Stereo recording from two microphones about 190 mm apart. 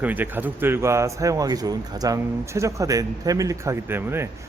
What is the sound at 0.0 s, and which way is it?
A man's voice, 10° right (ahead or behind).